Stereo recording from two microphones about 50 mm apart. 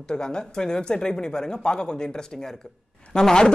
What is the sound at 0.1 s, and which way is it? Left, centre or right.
Speech, centre.